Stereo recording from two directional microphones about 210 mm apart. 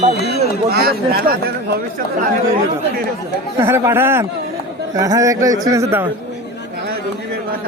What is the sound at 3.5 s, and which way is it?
A man's voice, 10° right (ahead or behind).